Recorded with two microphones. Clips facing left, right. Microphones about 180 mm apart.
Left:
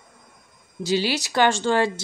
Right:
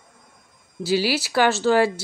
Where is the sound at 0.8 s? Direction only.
5° right (ahead or behind).